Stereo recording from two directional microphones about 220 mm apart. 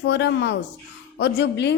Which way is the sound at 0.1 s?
55° left (ahead or behind).